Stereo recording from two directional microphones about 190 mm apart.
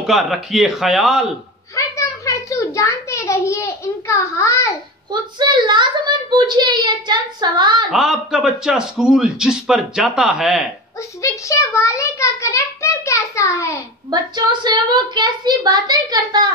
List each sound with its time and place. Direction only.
0.0 s a man's voice: centre (ahead or behind)
1.8 s a child's voice: 15° left (ahead or behind)
5.4 s a woman's voice: 25° right (ahead or behind)
7.9 s a man's voice: centre (ahead or behind)
11.2 s a child's voice: 15° left (ahead or behind)
14.1 s a woman's voice: 25° right (ahead or behind)